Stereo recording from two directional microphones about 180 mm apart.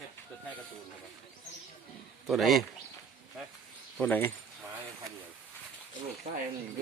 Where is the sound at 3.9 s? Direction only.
10° left (ahead or behind).